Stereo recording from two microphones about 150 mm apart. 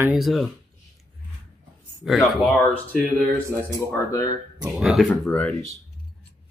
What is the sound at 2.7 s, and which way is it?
Speech, 10° left (ahead or behind).